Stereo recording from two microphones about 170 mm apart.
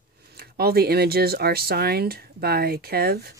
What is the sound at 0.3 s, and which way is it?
Speech, 65° right (ahead or behind).